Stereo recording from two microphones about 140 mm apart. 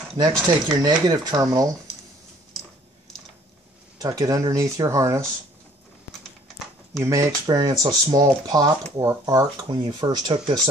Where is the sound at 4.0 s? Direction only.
25° right (ahead or behind).